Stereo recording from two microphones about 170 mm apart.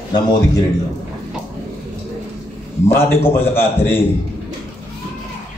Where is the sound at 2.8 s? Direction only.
15° left (ahead or behind).